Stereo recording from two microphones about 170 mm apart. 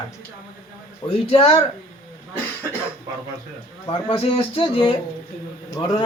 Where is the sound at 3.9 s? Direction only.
35° left (ahead or behind).